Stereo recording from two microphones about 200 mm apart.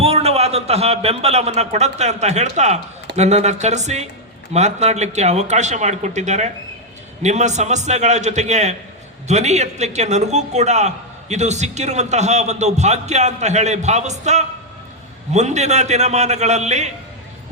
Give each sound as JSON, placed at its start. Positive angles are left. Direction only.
{"t": 0.0, "sound": "a man's voice", "side_deg": -30}